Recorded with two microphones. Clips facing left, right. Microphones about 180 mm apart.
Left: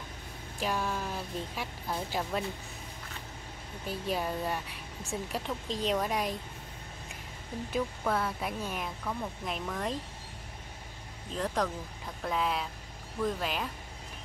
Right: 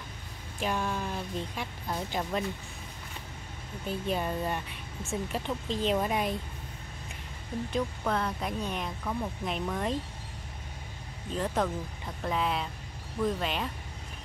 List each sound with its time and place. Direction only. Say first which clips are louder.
0.6 s speech: right 1 dB; centre (ahead or behind)
3.8 s speech: right 2 dB; 5° left (ahead or behind)
7.7 s speech: even; 5° left (ahead or behind)
11.3 s speech: right 2 dB; 5° right (ahead or behind)